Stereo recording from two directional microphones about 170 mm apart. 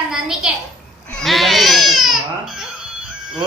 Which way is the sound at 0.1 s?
5° right (ahead or behind).